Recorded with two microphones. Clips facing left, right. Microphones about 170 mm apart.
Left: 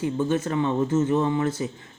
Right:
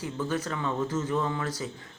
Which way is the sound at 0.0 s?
25° left (ahead or behind).